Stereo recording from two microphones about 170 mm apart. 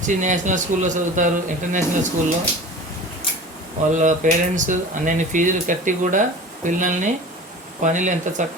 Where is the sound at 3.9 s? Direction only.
45° right (ahead or behind).